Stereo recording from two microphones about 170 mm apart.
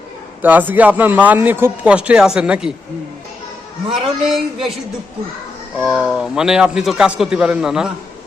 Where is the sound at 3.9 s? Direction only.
Centre (ahead or behind).